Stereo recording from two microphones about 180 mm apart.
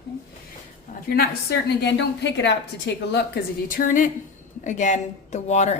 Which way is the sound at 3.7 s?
50° left (ahead or behind).